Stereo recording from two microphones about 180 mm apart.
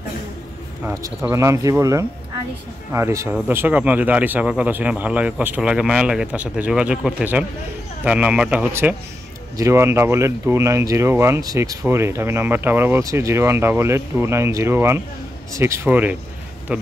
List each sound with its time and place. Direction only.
1.2 s speech: 15° right (ahead or behind)